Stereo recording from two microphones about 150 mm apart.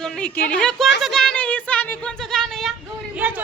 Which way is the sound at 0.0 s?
10° left (ahead or behind).